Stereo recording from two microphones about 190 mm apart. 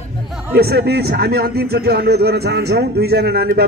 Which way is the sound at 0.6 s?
55° right (ahead or behind).